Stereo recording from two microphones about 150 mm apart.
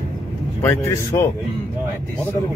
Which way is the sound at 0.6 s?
20° left (ahead or behind).